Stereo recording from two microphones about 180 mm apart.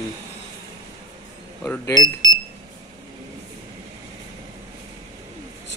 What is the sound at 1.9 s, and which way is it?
Speech, 20° left (ahead or behind).